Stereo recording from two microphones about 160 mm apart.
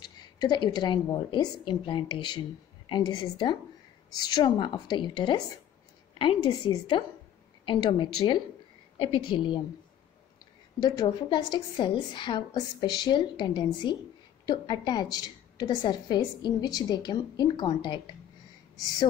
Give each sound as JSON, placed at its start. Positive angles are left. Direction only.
{"t": 0.0, "sound": "a woman's voice", "side_deg": 25}
{"t": 10.8, "sound": "a woman's voice", "side_deg": 25}